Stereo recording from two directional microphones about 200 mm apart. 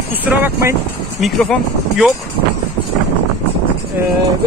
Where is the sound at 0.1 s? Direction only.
10° right (ahead or behind).